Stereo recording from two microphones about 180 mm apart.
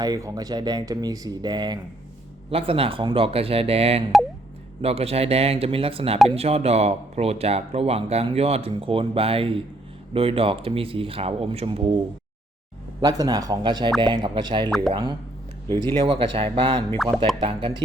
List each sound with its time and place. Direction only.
0.0 s speech: 20° right (ahead or behind)
13.0 s speech: 20° right (ahead or behind)
17.0 s music: centre (ahead or behind)
17.4 s speech: 30° right (ahead or behind)